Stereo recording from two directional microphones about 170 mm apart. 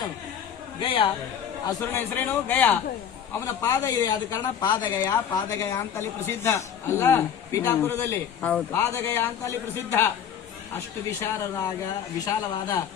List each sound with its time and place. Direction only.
1.6 s a woman's voice: 15° left (ahead or behind)